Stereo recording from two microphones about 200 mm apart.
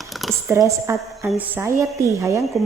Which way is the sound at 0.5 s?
15° right (ahead or behind).